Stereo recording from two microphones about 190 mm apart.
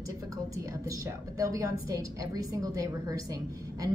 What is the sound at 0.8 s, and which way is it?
A woman's voice, 15° right (ahead or behind).